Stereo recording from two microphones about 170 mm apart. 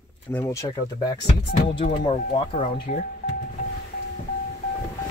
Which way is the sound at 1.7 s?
30° left (ahead or behind).